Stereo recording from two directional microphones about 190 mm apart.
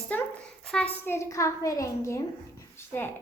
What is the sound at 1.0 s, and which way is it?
Speech, 15° left (ahead or behind).